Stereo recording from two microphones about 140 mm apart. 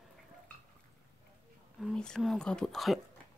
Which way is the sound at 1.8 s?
5° left (ahead or behind).